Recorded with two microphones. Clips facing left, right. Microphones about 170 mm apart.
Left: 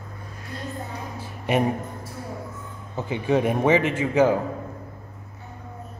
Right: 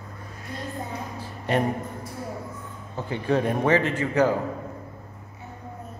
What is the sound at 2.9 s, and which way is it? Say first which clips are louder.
A man's voice: left 2 dB; 15° left (ahead or behind).